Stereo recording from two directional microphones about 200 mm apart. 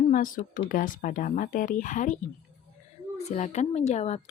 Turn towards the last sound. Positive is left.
turn(degrees=35)  # may be behind; listen again after turning